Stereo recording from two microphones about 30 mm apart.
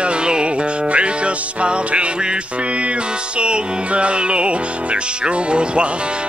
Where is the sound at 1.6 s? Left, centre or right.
Right.